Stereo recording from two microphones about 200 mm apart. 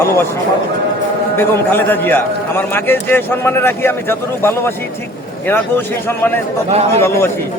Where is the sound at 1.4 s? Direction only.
10° left (ahead or behind).